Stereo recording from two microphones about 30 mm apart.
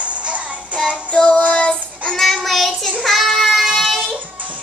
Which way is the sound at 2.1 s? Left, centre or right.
Centre.